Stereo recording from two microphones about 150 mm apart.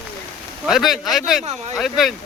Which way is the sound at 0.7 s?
Centre (ahead or behind).